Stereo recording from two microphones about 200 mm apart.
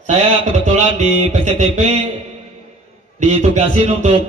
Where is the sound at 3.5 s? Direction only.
35° right (ahead or behind).